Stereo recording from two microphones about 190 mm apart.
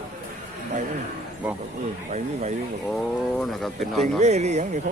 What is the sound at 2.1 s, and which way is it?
Speech, 35° right (ahead or behind).